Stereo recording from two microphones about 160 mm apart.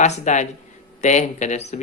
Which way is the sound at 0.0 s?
50° left (ahead or behind).